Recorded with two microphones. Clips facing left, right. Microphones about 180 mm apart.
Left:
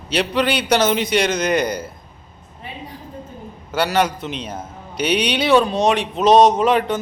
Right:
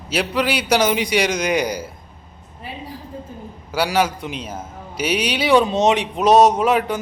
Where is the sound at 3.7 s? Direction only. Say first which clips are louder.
Left 1 dB; 5° right (ahead or behind).